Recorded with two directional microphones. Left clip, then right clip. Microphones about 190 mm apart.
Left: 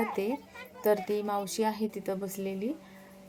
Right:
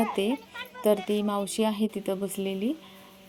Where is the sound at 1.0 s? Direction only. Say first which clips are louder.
Right 3 dB; 30° right (ahead or behind).